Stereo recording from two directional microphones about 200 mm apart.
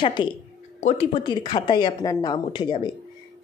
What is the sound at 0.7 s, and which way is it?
Speech, 40° left (ahead or behind).